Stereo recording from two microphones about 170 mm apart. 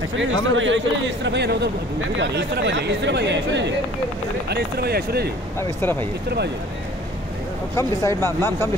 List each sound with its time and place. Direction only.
0.2 s speech: 90° right
4.5 s speech: 75° right (ahead or behind)
5.6 s speech: 10° left (ahead or behind)
7.7 s speech: 15° left (ahead or behind)